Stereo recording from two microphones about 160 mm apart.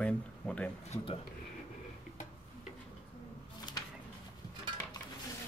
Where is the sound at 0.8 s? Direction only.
40° left (ahead or behind).